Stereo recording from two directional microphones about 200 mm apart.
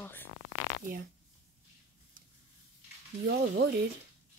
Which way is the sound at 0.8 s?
45° right (ahead or behind).